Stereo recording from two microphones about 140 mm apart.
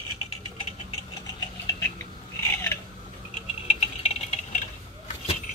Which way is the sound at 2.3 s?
15° left (ahead or behind).